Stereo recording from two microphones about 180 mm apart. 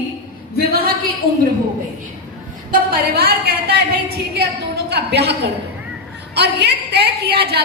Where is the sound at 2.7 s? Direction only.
60° right (ahead or behind).